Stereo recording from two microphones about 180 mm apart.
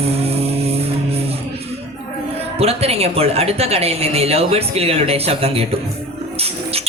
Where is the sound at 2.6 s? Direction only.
35° right (ahead or behind).